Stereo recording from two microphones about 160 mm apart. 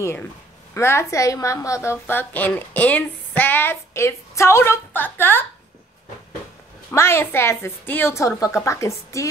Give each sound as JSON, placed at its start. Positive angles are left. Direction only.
{"t": 0.0, "sound": "a woman's voice", "side_deg": 15}
{"t": 6.9, "sound": "a woman's voice", "side_deg": 15}